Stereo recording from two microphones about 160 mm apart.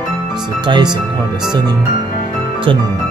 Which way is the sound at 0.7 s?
30° right (ahead or behind).